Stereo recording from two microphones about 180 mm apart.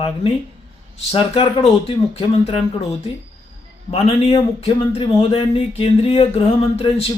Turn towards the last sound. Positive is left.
turn(degrees=30)  # may be behind; listen again after turning